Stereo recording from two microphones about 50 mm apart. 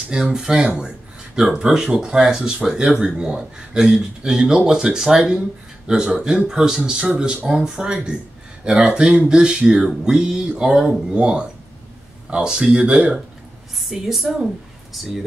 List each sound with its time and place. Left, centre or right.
0.1 s speech: centre
13.7 s speech: centre